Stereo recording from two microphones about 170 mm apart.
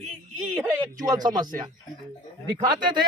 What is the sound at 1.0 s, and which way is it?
Speech, 25° right (ahead or behind).